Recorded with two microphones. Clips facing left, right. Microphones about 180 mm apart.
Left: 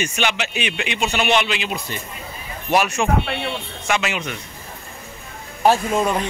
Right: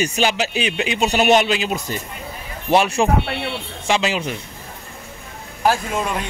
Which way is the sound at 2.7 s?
30° right (ahead or behind).